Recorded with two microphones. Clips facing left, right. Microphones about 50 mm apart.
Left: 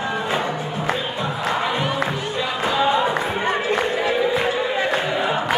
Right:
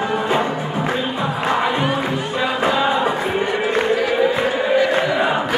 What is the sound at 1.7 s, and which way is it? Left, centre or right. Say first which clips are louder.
Music: right 3 dB; centre.